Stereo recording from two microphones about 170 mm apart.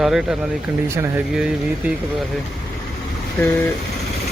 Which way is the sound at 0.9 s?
15° right (ahead or behind).